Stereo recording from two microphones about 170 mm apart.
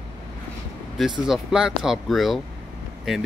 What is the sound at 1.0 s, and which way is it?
Speech, centre (ahead or behind).